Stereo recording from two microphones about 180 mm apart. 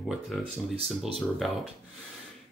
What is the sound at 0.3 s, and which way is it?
Speech, 5° left (ahead or behind).